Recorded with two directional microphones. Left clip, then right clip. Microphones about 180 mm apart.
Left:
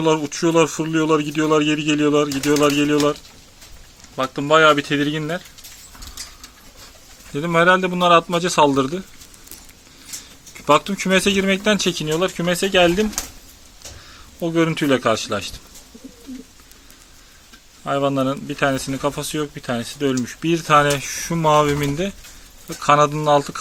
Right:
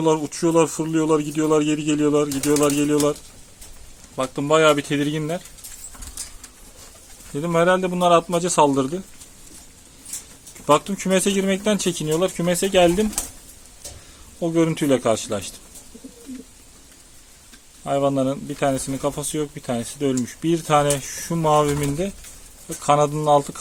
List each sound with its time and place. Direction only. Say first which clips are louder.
0.0 s speech: left 2 dB; centre (ahead or behind)
7.3 s speech: left 3 dB; centre (ahead or behind)
10.7 s speech: left 2 dB; centre (ahead or behind)
14.3 s speech: left 1 dB; 5° right (ahead or behind)
17.8 s speech: left 1 dB; centre (ahead or behind)